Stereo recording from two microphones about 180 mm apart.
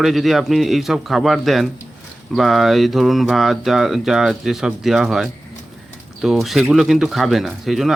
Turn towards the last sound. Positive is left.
turn(degrees=0)  # may be behind; listen again after turning